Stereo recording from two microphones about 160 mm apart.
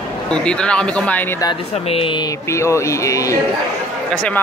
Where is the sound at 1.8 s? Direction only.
35° left (ahead or behind).